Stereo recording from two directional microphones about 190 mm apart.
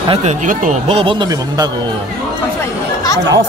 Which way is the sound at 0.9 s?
25° right (ahead or behind).